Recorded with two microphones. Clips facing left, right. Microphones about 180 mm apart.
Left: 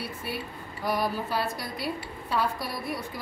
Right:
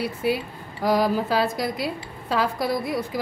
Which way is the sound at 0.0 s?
90° right.